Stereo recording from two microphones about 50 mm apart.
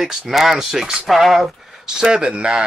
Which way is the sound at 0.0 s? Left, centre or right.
Centre.